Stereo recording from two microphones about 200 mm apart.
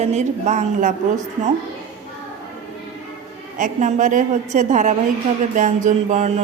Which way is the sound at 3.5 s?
40° right (ahead or behind).